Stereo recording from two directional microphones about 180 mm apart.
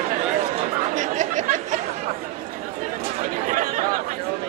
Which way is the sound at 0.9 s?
45° right (ahead or behind).